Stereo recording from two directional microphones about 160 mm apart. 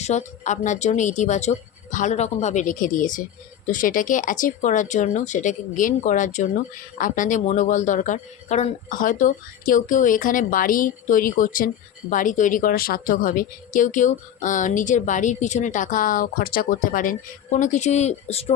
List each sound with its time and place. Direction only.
0.0 s a woman's voice: 45° left (ahead or behind)